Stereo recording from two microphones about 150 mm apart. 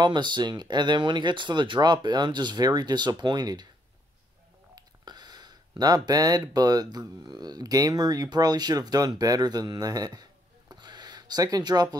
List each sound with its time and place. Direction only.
0.0 s speech: 30° right (ahead or behind)
4.7 s speech: 30° right (ahead or behind)
10.7 s gasp: 30° right (ahead or behind)